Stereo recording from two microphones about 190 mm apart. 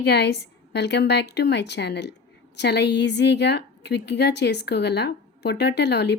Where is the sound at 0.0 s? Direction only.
60° left (ahead or behind).